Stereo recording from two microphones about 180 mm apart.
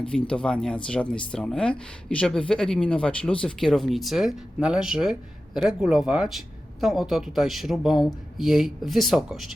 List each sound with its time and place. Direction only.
0.0 s speech: 5° left (ahead or behind)